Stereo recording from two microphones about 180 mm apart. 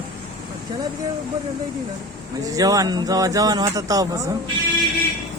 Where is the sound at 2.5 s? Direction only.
20° right (ahead or behind).